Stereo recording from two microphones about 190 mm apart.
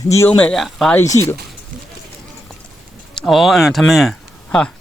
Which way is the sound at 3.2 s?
Centre (ahead or behind).